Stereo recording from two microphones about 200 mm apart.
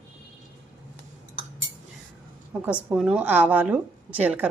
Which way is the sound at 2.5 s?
5° right (ahead or behind).